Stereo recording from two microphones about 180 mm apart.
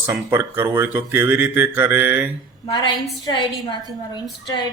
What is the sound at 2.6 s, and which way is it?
A woman's voice, 25° left (ahead or behind).